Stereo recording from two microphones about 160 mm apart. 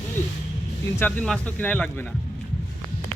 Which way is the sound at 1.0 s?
10° left (ahead or behind).